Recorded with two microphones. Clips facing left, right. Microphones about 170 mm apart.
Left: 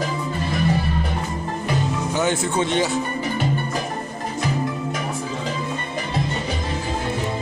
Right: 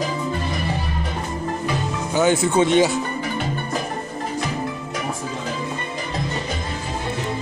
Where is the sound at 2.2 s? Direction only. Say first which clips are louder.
Right 6 dB; centre (ahead or behind).